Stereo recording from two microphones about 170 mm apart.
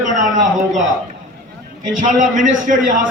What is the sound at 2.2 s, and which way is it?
Speech, 50° right (ahead or behind).